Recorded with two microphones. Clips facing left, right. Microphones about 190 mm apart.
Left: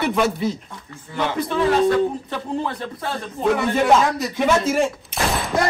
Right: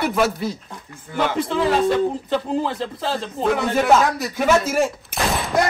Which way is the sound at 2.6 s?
25° right (ahead or behind).